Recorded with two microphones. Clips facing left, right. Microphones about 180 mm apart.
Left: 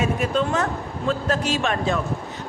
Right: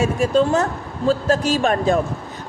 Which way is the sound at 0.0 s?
40° right (ahead or behind).